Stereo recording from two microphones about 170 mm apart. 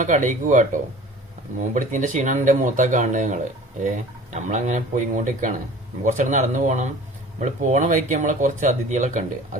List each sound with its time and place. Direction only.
0.0 s speech: 50° right (ahead or behind)